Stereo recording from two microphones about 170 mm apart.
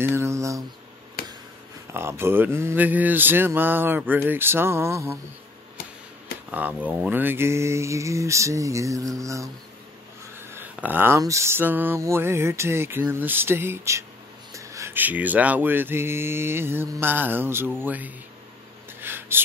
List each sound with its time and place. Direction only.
0.0 s mantra: 15° right (ahead or behind)
2.0 s speech: 15° right (ahead or behind)
6.5 s speech: 10° right (ahead or behind)
10.5 s speech: 10° right (ahead or behind)
18.9 s a sound: 15° right (ahead or behind)